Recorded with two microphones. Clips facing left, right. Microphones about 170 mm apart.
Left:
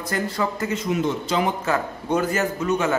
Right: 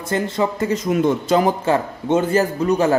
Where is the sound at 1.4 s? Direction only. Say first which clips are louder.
Right 5 dB; 30° right (ahead or behind).